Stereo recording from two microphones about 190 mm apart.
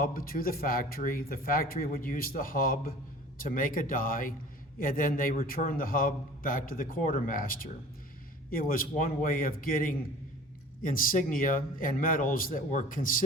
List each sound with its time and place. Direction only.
0.0 s a man's voice: 50° left (ahead or behind)